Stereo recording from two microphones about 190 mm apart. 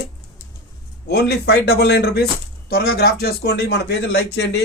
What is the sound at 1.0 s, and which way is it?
Speech, 60° left (ahead or behind).